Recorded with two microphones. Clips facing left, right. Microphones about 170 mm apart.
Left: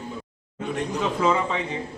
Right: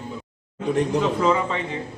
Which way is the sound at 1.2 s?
Centre (ahead or behind).